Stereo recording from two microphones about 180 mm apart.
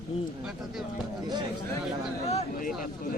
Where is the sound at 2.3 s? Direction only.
45° left (ahead or behind).